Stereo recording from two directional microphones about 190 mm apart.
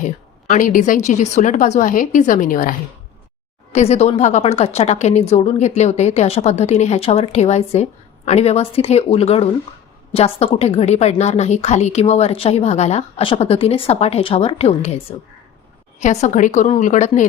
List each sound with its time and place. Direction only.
0.0 s a woman's voice: 40° left (ahead or behind)
16.0 s a woman's voice: 40° left (ahead or behind)